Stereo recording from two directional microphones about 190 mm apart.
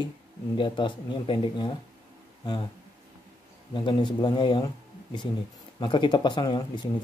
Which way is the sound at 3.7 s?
25° left (ahead or behind).